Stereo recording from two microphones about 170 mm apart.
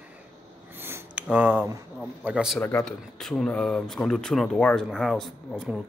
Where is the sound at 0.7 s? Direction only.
15° right (ahead or behind).